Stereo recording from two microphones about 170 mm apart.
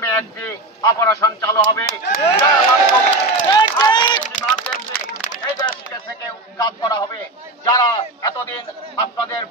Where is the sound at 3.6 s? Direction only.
25° left (ahead or behind).